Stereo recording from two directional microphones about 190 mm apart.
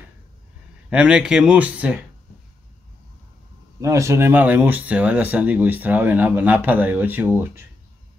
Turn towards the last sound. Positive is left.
turn(degrees=-10)  # may be behind; listen again after turning